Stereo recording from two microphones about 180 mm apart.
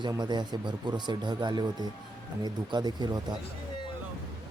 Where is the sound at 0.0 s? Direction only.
25° right (ahead or behind).